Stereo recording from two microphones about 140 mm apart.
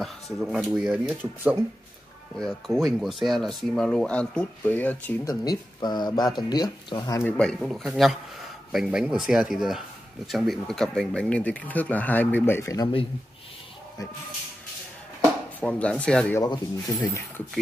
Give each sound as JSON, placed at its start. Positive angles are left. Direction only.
{"t": 0.0, "sound": "speech", "side_deg": 0}
{"t": 2.3, "sound": "speech", "side_deg": 0}
{"t": 5.2, "sound": "speech", "side_deg": 30}
{"t": 7.2, "sound": "speech", "side_deg": 10}
{"t": 15.6, "sound": "speech", "side_deg": 10}
{"t": 16.3, "sound": "speech", "side_deg": 25}